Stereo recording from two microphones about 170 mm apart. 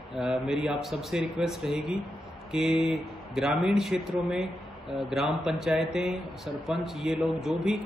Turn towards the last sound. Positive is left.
turn(degrees=0)  # may be behind; listen again after turning